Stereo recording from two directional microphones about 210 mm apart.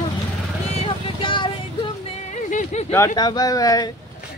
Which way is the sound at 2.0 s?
35° left (ahead or behind).